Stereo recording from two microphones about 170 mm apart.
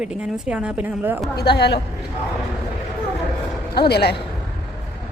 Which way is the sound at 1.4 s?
75° left (ahead or behind).